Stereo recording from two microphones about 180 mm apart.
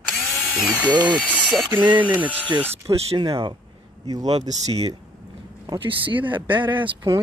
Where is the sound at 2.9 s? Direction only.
35° right (ahead or behind).